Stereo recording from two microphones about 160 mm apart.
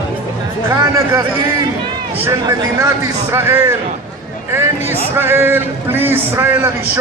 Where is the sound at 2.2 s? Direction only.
20° right (ahead or behind).